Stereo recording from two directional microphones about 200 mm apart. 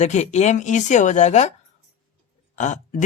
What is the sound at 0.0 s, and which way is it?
Speech, 35° left (ahead or behind).